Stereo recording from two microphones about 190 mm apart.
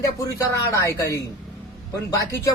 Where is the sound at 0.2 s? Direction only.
20° left (ahead or behind).